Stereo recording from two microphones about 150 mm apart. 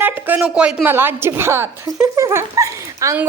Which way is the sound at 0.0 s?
10° right (ahead or behind).